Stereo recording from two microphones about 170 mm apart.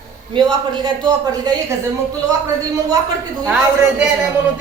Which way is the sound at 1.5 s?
25° right (ahead or behind).